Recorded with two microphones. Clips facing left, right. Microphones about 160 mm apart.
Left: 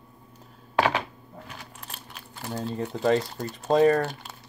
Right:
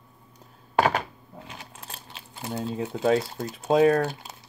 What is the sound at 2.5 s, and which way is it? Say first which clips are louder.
Speech: right 1 dB; 5° right (ahead or behind).